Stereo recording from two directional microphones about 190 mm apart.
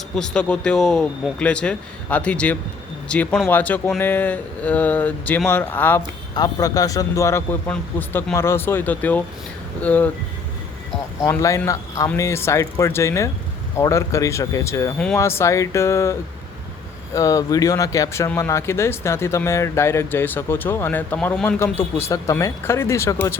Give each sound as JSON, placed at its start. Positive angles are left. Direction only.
{"t": 0.2, "sound": "speech", "side_deg": 5}
{"t": 11.2, "sound": "speech", "side_deg": 15}
{"t": 17.2, "sound": "speech", "side_deg": 15}